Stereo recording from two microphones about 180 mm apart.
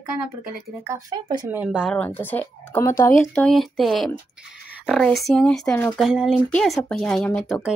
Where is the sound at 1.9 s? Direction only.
10° left (ahead or behind).